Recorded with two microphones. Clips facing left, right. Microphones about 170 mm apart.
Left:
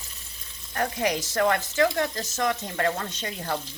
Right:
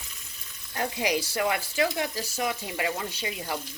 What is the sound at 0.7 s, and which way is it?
Speech, 15° right (ahead or behind).